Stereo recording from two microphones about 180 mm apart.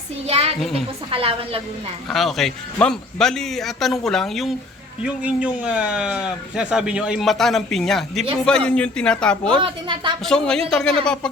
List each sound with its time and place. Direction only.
0.3 s a woman's voice: 35° right (ahead or behind)
2.0 s speech: centre (ahead or behind)
9.6 s a woman's voice: 30° right (ahead or behind)
10.2 s speech: 5° left (ahead or behind)